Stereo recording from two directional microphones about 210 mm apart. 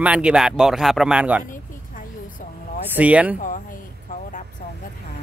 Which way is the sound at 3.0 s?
5° right (ahead or behind).